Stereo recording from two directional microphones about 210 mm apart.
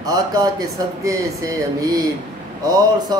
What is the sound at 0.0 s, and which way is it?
Speech, 15° right (ahead or behind).